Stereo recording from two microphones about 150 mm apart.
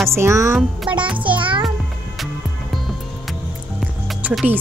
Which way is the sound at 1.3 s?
35° right (ahead or behind).